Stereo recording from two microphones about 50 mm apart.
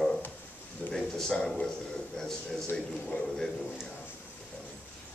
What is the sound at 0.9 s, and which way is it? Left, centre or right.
A man's voice, centre.